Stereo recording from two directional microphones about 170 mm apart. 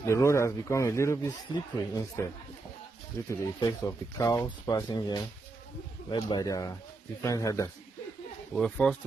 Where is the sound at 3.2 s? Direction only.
20° left (ahead or behind).